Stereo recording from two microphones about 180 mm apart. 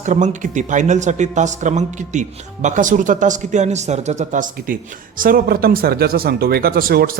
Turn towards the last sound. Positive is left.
turn(degrees=-55)  # may be behind; listen again after turning